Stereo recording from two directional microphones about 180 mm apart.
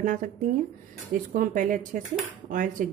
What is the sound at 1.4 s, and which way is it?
Speech, 50° right (ahead or behind).